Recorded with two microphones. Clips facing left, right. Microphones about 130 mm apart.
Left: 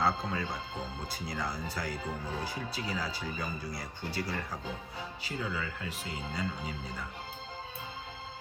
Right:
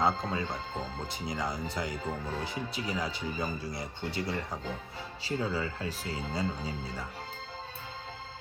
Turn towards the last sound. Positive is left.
turn(degrees=-30)  # may be behind; listen again after turning